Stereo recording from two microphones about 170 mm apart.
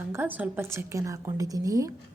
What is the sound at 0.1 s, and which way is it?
A woman's voice, 10° right (ahead or behind).